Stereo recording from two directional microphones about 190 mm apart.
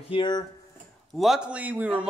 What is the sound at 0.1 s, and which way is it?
Speech, 25° left (ahead or behind).